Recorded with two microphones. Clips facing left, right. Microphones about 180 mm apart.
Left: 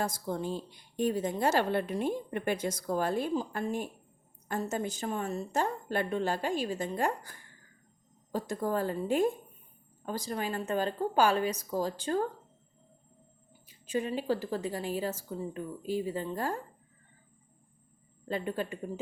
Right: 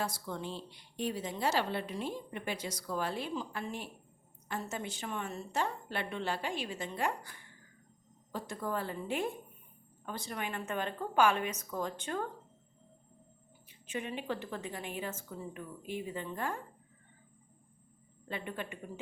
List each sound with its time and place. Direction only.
0.0 s a woman's voice: 40° left (ahead or behind)
13.7 s speech: 35° left (ahead or behind)
18.3 s speech: 35° left (ahead or behind)